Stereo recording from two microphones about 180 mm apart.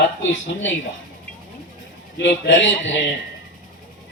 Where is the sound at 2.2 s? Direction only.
75° left (ahead or behind); by 2.9 s 90° left.